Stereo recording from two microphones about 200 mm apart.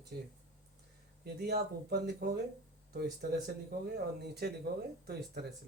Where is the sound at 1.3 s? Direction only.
55° right (ahead or behind).